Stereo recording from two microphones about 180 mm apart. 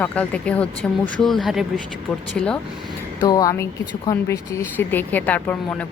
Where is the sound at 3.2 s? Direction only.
20° left (ahead or behind).